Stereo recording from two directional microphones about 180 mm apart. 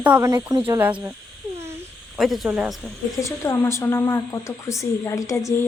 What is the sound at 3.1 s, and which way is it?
Speech, 15° left (ahead or behind).